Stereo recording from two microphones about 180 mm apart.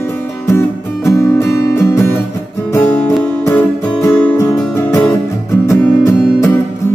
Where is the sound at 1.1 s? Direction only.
15° left (ahead or behind).